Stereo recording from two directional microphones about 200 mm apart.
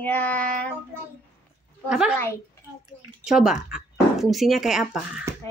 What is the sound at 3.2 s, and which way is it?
Speech, 5° right (ahead or behind).